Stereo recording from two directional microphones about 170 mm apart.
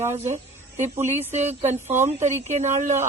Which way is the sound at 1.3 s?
40° right (ahead or behind).